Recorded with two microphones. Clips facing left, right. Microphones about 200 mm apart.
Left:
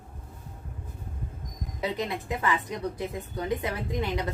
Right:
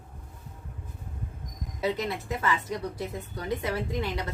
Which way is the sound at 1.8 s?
15° left (ahead or behind).